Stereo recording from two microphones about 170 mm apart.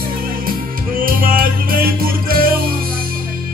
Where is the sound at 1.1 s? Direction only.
55° right (ahead or behind).